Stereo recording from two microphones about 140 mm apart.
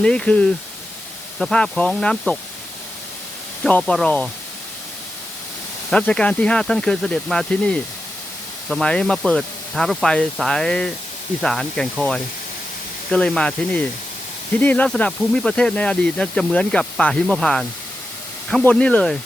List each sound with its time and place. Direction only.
0.0 s speech: 5° left (ahead or behind)
3.6 s speech: 5° left (ahead or behind)
5.9 s speech: 5° left (ahead or behind)